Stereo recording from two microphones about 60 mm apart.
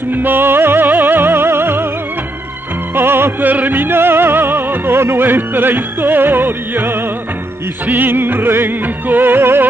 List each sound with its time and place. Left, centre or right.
0.1 s music: right
2.9 s music: right